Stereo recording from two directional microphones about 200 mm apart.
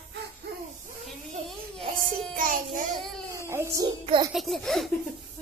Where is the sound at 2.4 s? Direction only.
45° right (ahead or behind).